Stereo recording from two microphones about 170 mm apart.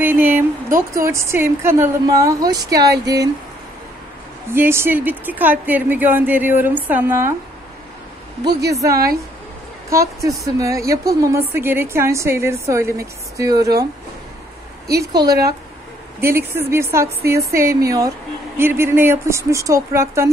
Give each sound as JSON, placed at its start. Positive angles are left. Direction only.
{"t": 0.0, "sound": "a woman's voice", "side_deg": -10}
{"t": 4.6, "sound": "a woman's voice", "side_deg": -15}
{"t": 9.8, "sound": "a woman's voice", "side_deg": -20}
{"t": 15.0, "sound": "a woman's voice", "side_deg": -20}